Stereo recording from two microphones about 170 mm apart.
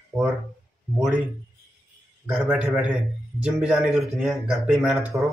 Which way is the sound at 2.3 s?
5° right (ahead or behind).